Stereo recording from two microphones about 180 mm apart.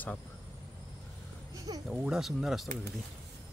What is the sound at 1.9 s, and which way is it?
Speech, 5° right (ahead or behind).